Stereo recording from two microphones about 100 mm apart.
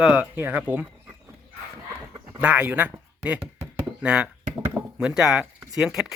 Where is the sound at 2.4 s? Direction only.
15° right (ahead or behind).